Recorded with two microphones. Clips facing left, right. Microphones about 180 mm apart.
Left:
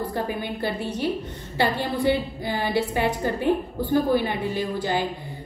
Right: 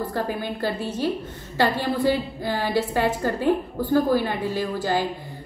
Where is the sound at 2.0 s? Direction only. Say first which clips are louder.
Even; 20° left (ahead or behind).